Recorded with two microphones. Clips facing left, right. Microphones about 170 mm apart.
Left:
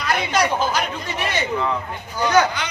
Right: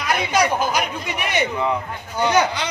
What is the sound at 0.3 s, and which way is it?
Speech, 10° right (ahead or behind).